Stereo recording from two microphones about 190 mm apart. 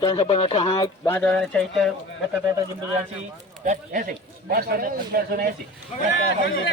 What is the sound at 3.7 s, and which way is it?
A man's voice, 45° right (ahead or behind).